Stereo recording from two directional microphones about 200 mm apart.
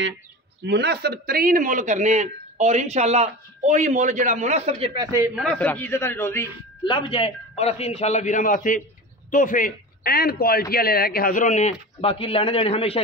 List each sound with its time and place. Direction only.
0.7 s a man's voice: 55° right (ahead or behind); by 5.3 s 15° right (ahead or behind)
5.3 s a man's voice: 5° left (ahead or behind)
6.8 s a man's voice: 25° left (ahead or behind)